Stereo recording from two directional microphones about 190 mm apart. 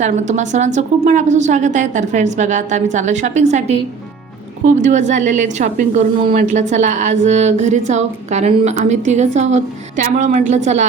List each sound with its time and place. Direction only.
0.0 s speech: 40° right (ahead or behind)